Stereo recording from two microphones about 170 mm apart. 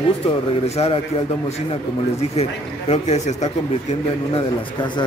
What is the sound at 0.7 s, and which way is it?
Speech, 35° left (ahead or behind).